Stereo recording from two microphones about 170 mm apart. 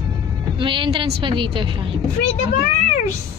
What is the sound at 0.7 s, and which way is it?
Speech, 30° right (ahead or behind).